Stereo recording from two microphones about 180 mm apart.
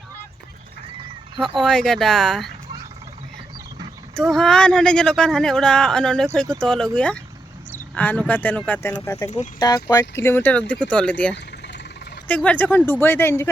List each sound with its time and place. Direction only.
1.4 s speech: centre (ahead or behind)
4.1 s speech: centre (ahead or behind)